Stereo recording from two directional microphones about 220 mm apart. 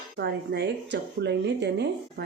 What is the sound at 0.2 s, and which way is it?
Speech, 50° right (ahead or behind).